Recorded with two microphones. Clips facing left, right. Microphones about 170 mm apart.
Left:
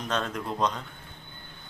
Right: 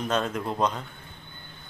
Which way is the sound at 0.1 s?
5° right (ahead or behind).